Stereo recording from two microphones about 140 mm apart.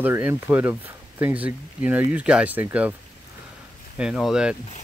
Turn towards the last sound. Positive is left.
turn(degrees=-5)  # may be behind; listen again after turning